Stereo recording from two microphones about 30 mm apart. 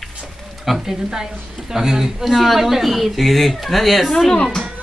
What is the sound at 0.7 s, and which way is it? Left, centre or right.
Speech, centre.